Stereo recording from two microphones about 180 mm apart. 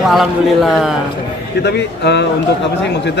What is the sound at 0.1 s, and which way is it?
Speech, centre (ahead or behind).